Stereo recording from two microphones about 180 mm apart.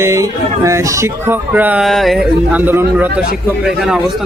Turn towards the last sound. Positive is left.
turn(degrees=0)  # may be behind; listen again after turning